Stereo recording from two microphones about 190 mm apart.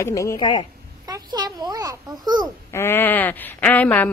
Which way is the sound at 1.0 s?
20° right (ahead or behind).